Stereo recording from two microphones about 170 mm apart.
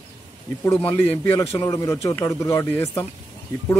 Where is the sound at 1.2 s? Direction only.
15° left (ahead or behind).